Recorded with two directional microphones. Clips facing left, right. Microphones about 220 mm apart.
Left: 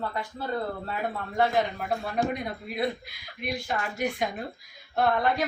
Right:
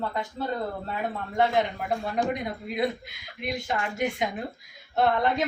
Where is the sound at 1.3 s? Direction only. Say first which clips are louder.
Right 1 dB; 20° right (ahead or behind).